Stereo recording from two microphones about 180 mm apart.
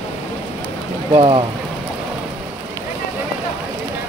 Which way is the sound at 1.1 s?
30° right (ahead or behind).